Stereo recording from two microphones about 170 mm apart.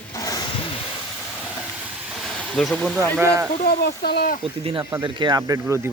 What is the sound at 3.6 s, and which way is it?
Speech, 65° left (ahead or behind).